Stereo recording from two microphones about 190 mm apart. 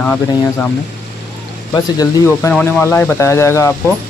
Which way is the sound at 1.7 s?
20° left (ahead or behind).